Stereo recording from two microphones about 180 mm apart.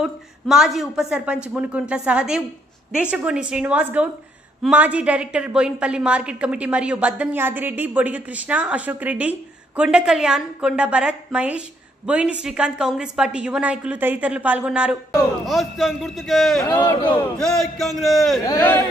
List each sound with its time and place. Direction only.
0.0 s a woman's voice: 5° right (ahead or behind)
18.4 s speech: 15° left (ahead or behind)